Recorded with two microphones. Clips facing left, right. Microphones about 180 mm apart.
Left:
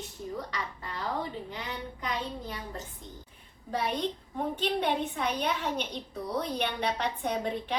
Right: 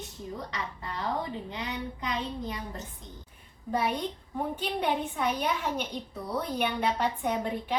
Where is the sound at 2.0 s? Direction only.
20° right (ahead or behind).